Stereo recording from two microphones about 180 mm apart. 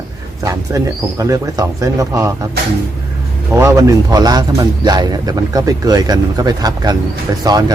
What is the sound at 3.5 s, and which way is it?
A man's voice, 15° right (ahead or behind).